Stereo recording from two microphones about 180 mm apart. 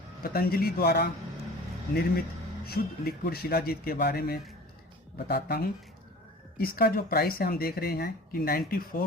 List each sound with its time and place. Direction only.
0.2 s speech: 55° left (ahead or behind)
2.6 s speech: 60° left (ahead or behind)